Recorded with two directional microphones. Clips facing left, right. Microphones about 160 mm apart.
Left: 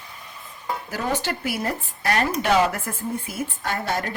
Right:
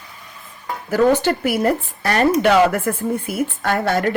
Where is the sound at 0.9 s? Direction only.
60° right (ahead or behind).